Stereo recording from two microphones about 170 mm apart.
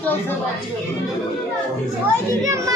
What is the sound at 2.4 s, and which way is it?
Speech, 20° right (ahead or behind).